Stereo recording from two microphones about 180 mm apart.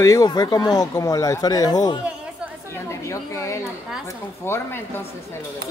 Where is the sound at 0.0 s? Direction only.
20° left (ahead or behind).